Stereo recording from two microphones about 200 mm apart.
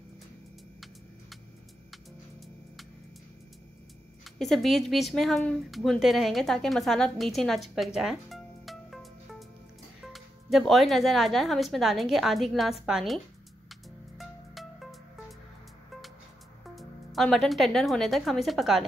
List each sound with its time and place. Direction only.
4.2 s speech: centre (ahead or behind)
10.1 s speech: centre (ahead or behind)
13.7 s music: centre (ahead or behind)
16.7 s speech: centre (ahead or behind)